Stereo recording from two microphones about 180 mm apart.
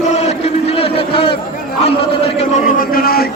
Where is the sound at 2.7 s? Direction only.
55° left (ahead or behind).